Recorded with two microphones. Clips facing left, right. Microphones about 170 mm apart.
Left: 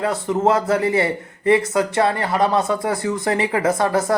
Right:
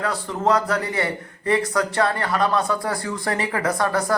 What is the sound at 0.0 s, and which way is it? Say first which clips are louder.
Speech: left 5 dB; 25° left (ahead or behind).